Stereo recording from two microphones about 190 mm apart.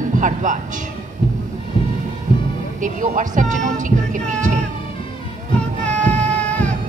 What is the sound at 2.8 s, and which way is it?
Speech, 45° right (ahead or behind).